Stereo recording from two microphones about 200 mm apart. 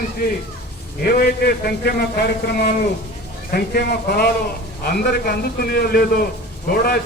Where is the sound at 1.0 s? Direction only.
50° left (ahead or behind).